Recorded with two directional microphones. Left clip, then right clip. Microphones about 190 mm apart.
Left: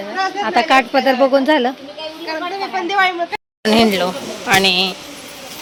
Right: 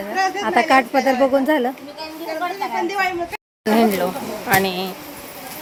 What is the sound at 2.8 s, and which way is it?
Speech, 30° left (ahead or behind).